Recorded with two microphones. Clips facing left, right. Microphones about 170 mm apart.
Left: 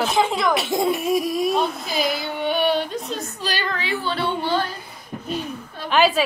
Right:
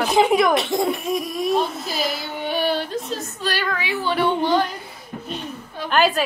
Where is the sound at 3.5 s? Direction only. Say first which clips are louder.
Even; 10° right (ahead or behind).